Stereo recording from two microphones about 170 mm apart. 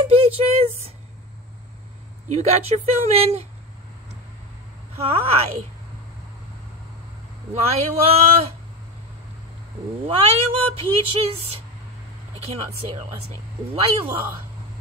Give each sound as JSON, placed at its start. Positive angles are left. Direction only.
{"t": 0.1, "sound": "a sound", "side_deg": -35}
{"t": 2.2, "sound": "speech", "side_deg": -40}
{"t": 4.9, "sound": "speech", "side_deg": -35}
{"t": 7.5, "sound": "speech", "side_deg": -35}
{"t": 10.0, "sound": "speech", "side_deg": -35}